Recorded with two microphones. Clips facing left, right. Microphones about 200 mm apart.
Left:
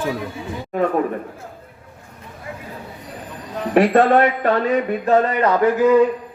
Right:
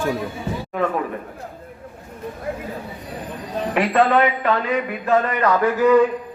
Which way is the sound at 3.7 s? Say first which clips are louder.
Left 4 dB; 45° left (ahead or behind).